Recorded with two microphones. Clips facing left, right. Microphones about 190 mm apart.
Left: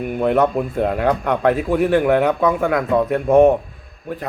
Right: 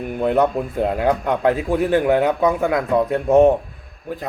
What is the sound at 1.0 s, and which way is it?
A man's voice, 30° right (ahead or behind).